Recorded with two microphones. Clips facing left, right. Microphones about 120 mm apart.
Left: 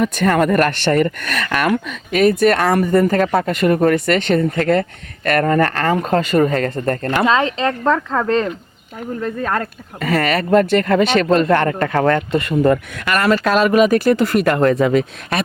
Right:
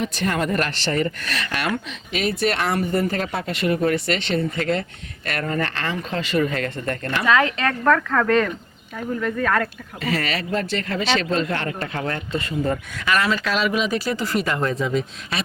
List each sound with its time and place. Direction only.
0.0 s speech: 50° left (ahead or behind)
7.3 s speech: 25° left (ahead or behind)
10.0 s speech: 50° left (ahead or behind); by 15.4 s 65° left (ahead or behind)